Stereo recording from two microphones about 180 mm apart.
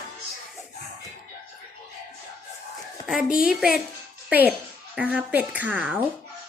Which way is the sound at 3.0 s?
5° right (ahead or behind).